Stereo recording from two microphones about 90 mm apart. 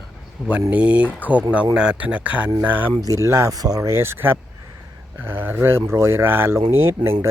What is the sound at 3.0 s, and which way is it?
Speech, 35° right (ahead or behind).